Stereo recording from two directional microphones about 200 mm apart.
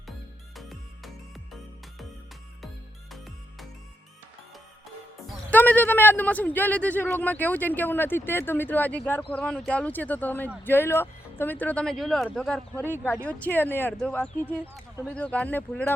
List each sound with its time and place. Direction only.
0.5 s music: centre (ahead or behind)
5.5 s a man's voice: 10° left (ahead or behind)